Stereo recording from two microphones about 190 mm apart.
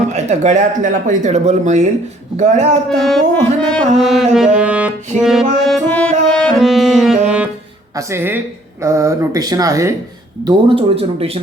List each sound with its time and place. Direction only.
0.1 s speech: 40° right (ahead or behind)
2.9 s music: centre (ahead or behind)
4.4 s speech: 5° right (ahead or behind)
5.2 s music: 5° right (ahead or behind)
7.9 s speech: 10° right (ahead or behind)
10.4 s speech: 30° right (ahead or behind)